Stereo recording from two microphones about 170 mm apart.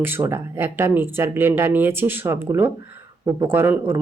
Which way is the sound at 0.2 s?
15° right (ahead or behind).